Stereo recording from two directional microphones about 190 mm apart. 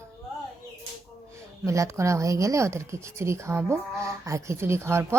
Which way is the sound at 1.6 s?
15° right (ahead or behind).